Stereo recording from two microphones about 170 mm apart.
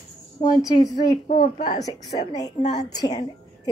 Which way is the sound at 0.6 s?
20° left (ahead or behind).